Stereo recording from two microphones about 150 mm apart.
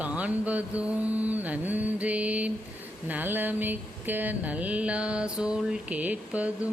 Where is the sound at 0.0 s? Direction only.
10° right (ahead or behind).